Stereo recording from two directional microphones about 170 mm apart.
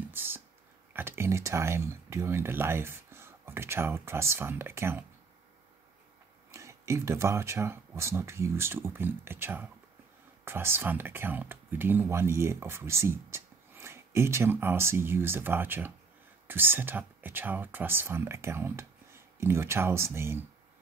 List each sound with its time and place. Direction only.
0.1 s speech: 10° right (ahead or behind)
6.5 s speech: 15° right (ahead or behind)